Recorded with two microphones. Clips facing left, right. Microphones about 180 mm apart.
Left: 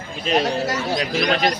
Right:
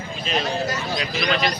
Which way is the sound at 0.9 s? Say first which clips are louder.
Left 3 dB; 45° left (ahead or behind).